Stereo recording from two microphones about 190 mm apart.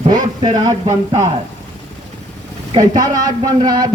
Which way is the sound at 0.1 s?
20° right (ahead or behind).